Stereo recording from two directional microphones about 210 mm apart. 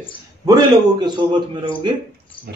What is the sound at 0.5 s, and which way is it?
A man's voice, 20° right (ahead or behind).